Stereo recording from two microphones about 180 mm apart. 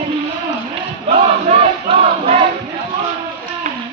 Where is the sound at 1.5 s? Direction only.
35° right (ahead or behind).